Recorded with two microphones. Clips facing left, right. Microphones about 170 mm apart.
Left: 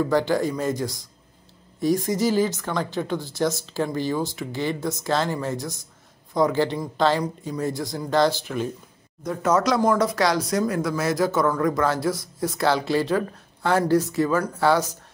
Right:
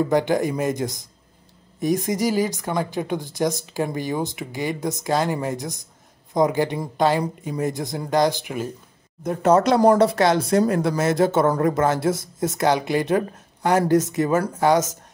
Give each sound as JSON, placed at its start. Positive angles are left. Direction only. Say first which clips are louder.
{"t": 0.1, "sound": "speech", "louder": "right 2 dB", "side_deg": -20}
{"t": 9.8, "sound": "speech", "louder": "right 5 dB", "side_deg": -35}